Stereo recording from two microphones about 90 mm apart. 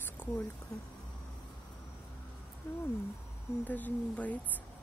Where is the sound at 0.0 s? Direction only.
20° left (ahead or behind).